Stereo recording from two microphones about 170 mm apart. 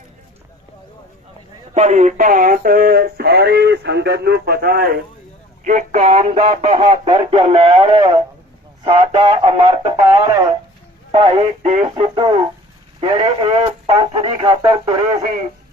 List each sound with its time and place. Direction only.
1.7 s speech: 45° right (ahead or behind); by 5.0 s 60° right (ahead or behind)
5.6 s speech: 45° right (ahead or behind); by 15.0 s 30° right (ahead or behind)